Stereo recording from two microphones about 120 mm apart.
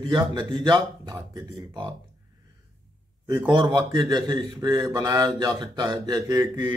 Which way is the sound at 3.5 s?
40° right (ahead or behind).